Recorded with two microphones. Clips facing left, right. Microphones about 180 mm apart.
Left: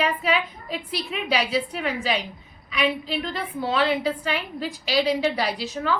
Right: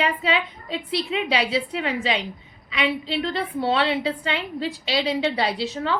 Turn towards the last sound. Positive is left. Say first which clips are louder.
# right 1 dB
turn(degrees=-25)  # may be behind; listen again after turning